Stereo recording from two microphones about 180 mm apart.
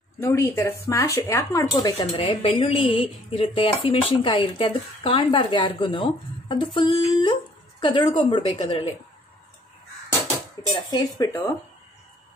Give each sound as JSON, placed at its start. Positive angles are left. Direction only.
{"t": 0.2, "sound": "speech", "side_deg": 15}
{"t": 10.7, "sound": "speech", "side_deg": 20}